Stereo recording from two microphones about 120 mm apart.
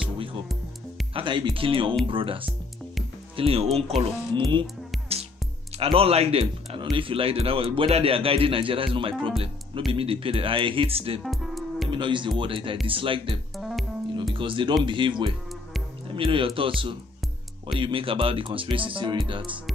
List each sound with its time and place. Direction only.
1.1 s speech: 40° right (ahead or behind)
5.8 s speech: 55° right (ahead or behind)
11.2 s music: centre (ahead or behind)
11.9 s speech: 40° right (ahead or behind)
13.6 s music: centre (ahead or behind)
14.3 s speech: 45° right (ahead or behind)